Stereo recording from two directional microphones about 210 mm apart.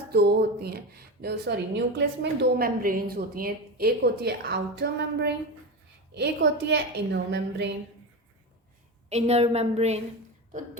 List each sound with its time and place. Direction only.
0.1 s a woman's voice: 50° right (ahead or behind)
9.0 s a woman's voice: 30° right (ahead or behind)